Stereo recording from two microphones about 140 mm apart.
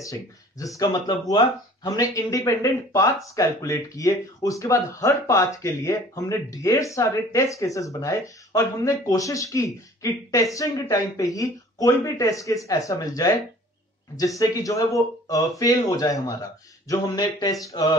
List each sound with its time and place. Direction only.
0.0 s speech: 25° left (ahead or behind)